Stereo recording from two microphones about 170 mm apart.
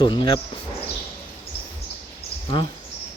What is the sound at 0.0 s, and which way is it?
Speech, 30° left (ahead or behind).